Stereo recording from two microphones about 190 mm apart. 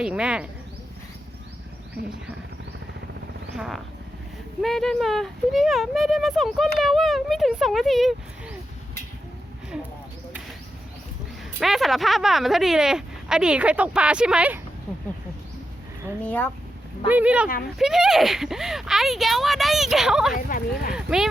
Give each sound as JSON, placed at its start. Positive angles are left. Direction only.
{"t": 0.0, "sound": "speech", "side_deg": -5}
{"t": 3.5, "sound": "speech", "side_deg": 0}
{"t": 11.6, "sound": "speech", "side_deg": 0}
{"t": 16.2, "sound": "speech", "side_deg": 10}
{"t": 17.1, "sound": "speech", "side_deg": -5}
{"t": 20.3, "sound": "speech", "side_deg": 45}
{"t": 20.9, "sound": "speech", "side_deg": -5}